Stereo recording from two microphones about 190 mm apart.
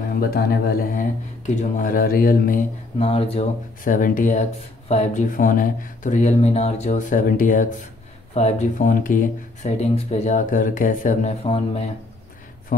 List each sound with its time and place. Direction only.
0.2 s speech: 50° left (ahead or behind)
3.0 s speech: 30° left (ahead or behind)
3.8 s speech: 45° left (ahead or behind)